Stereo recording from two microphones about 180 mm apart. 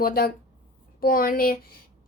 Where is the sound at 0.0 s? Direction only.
55° left (ahead or behind).